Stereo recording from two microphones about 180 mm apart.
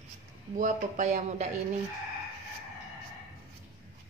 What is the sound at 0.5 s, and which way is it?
Speech, 45° right (ahead or behind).